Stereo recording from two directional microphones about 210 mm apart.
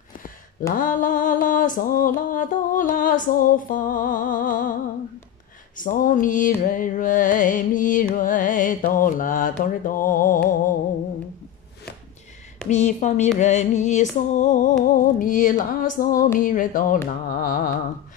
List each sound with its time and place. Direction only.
0.7 s music: 40° left (ahead or behind)
5.8 s music: 40° left (ahead or behind)
12.6 s music: 35° left (ahead or behind)